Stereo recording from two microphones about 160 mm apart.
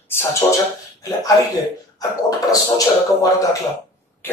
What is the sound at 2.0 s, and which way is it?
A man's voice, 25° left (ahead or behind).